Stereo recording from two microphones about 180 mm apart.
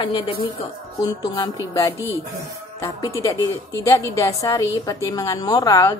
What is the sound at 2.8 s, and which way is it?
A woman's voice, 15° left (ahead or behind).